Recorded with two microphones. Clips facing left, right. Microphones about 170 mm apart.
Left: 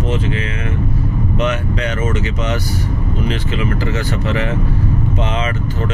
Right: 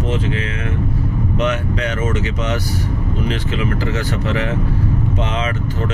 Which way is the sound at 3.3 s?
Centre (ahead or behind).